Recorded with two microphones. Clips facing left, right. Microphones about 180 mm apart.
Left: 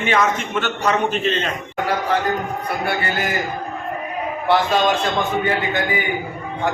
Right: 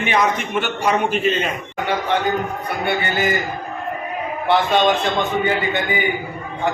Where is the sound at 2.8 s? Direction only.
Centre (ahead or behind).